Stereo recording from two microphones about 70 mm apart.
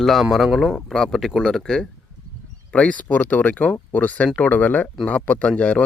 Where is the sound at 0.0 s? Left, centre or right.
Centre.